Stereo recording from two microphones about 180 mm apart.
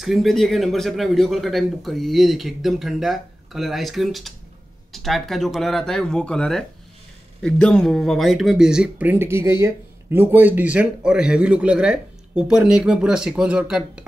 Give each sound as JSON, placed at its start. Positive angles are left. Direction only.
{"t": 0.0, "sound": "a man's voice", "side_deg": 0}